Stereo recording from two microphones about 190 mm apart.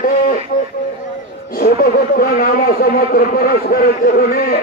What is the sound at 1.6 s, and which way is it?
A man's voice, 50° left (ahead or behind).